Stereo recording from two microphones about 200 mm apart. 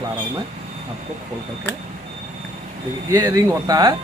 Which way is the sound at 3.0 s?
15° right (ahead or behind).